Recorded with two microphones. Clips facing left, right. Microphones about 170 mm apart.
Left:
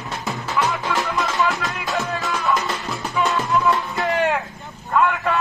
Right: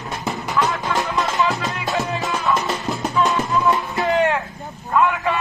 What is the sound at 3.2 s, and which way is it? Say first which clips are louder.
Music: even; centre (ahead or behind).